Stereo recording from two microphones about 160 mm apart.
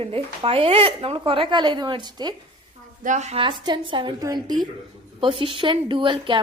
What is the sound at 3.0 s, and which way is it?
A woman's voice, 50° right (ahead or behind).